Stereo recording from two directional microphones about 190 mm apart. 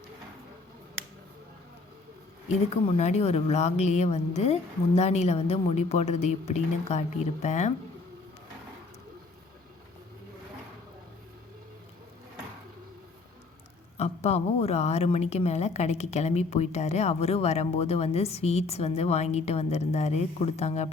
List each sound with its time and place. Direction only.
2.8 s a woman's voice: 35° left (ahead or behind)
13.9 s a woman's voice: 35° left (ahead or behind)